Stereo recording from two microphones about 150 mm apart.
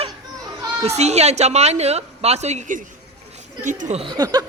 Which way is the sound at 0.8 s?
45° right (ahead or behind).